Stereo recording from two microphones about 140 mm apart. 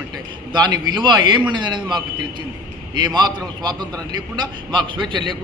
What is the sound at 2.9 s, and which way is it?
A man's voice, 30° right (ahead or behind).